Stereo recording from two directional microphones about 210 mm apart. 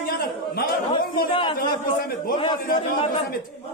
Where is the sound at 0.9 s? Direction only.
25° left (ahead or behind).